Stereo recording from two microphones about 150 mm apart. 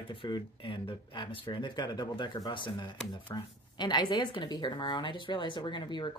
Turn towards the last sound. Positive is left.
turn(degrees=30)  # may be behind; listen again after turning